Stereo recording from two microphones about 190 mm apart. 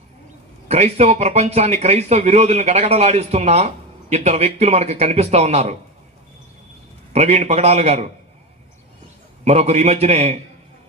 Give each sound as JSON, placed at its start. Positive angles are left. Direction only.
{"t": 0.7, "sound": "speech", "side_deg": -35}
{"t": 7.1, "sound": "speech", "side_deg": -35}
{"t": 9.4, "sound": "speech", "side_deg": -35}